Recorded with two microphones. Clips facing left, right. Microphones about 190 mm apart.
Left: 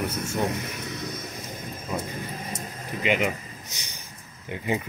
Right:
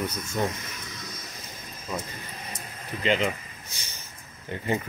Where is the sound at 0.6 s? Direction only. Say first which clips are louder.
Left 7 dB; 65° left (ahead or behind).